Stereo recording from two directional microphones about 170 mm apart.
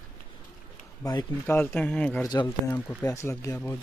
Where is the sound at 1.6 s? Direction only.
10° left (ahead or behind).